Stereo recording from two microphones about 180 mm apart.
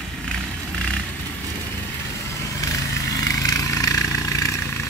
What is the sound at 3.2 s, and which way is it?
Vehicle, 20° left (ahead or behind).